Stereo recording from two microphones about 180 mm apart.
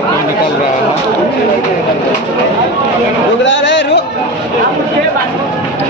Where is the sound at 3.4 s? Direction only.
85° left.